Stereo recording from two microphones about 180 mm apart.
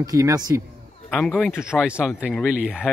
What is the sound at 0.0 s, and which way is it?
Speech, 20° right (ahead or behind).